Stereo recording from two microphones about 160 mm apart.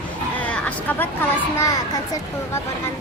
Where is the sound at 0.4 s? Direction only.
10° left (ahead or behind).